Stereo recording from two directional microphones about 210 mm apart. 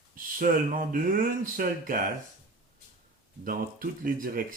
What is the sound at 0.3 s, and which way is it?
Speech, 40° right (ahead or behind).